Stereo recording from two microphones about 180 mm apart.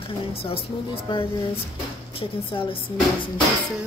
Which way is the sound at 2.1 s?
30° left (ahead or behind).